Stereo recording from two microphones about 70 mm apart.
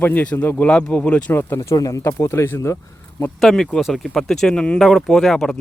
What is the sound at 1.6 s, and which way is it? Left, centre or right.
Speech, left.